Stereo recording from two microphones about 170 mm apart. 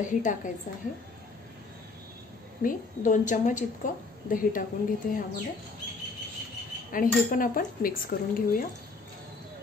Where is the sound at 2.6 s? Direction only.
50° left (ahead or behind).